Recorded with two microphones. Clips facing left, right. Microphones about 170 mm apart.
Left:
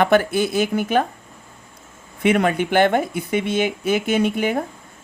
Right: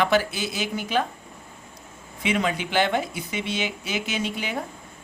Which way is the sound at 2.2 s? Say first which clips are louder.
Left 7 dB; 55° left (ahead or behind).